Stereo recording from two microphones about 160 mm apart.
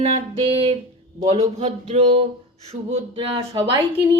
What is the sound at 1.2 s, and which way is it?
Speech, 45° right (ahead or behind).